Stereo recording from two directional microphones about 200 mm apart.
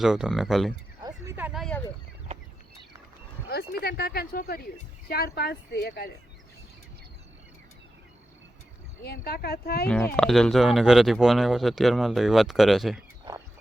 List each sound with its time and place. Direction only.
0.0 s speech: centre (ahead or behind)
1.0 s a sound: 15° right (ahead or behind)
3.5 s speech: 50° left (ahead or behind)
9.0 s speech: 50° left (ahead or behind)
9.8 s speech: 10° left (ahead or behind)
13.3 s a sound: 25° right (ahead or behind)